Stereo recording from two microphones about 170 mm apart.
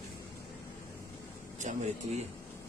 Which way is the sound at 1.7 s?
45° right (ahead or behind).